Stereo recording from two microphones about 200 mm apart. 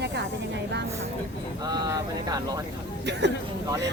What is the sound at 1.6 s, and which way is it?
Speech, 20° right (ahead or behind).